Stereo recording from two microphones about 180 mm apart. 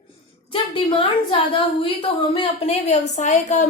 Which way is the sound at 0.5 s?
30° left (ahead or behind).